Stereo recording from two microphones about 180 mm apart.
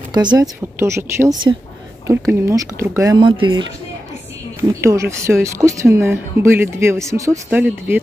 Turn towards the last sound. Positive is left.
turn(degrees=-10)  # may be behind; listen again after turning